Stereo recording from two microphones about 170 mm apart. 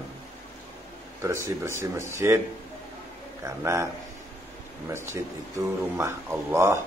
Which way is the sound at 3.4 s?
15° right (ahead or behind).